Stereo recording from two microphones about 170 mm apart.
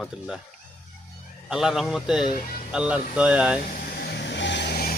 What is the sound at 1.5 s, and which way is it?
Speech, centre (ahead or behind).